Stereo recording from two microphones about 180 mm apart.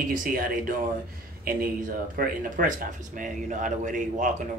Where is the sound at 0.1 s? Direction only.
50° right (ahead or behind).